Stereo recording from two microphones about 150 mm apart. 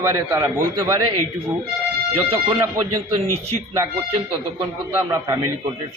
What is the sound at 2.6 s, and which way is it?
Speech, 25° right (ahead or behind).